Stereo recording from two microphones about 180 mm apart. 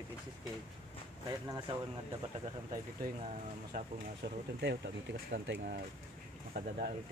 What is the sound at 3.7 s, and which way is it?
Speech, 60° right (ahead or behind).